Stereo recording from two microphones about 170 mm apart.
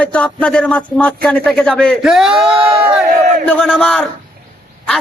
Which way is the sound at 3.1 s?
50° right (ahead or behind).